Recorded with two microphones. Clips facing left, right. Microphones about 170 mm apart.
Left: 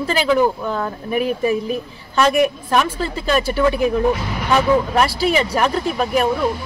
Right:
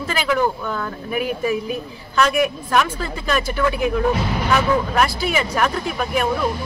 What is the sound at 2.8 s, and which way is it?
Speech, 30° left (ahead or behind).